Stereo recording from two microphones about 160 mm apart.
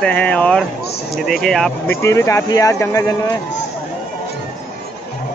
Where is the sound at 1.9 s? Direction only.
15° left (ahead or behind).